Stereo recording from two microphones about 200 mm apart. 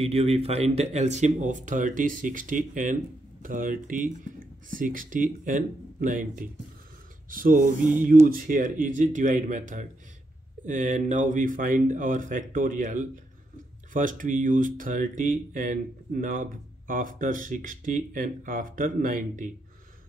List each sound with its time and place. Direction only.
0.0 s speech: 30° right (ahead or behind)